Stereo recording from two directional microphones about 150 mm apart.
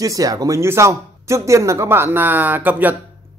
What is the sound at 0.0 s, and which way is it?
Speech, 25° right (ahead or behind).